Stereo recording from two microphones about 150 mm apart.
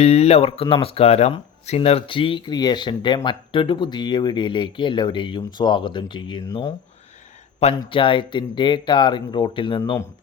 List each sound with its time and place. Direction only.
0.0 s speech: 45° left (ahead or behind); by 6.7 s 25° left (ahead or behind)
7.8 s speech: 35° left (ahead or behind)